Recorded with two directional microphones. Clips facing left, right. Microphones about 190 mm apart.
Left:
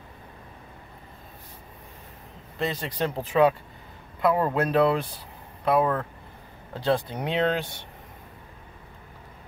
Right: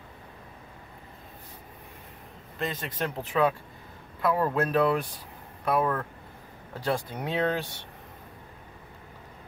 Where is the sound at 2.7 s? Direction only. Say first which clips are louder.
Left 4 dB; 30° left (ahead or behind).